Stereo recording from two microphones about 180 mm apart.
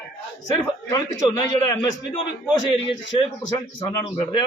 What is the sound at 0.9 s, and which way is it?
A man's voice, 20° left (ahead or behind).